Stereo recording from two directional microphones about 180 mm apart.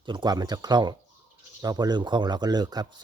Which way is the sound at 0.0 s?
25° right (ahead or behind).